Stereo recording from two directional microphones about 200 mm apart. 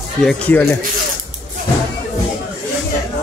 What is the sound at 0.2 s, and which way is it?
Speech, 5° left (ahead or behind).